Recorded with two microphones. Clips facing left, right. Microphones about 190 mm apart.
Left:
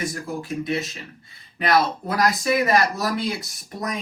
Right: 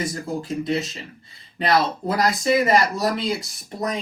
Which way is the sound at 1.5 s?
30° right (ahead or behind).